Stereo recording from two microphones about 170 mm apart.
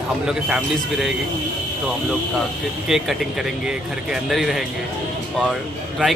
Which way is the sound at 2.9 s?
Centre (ahead or behind).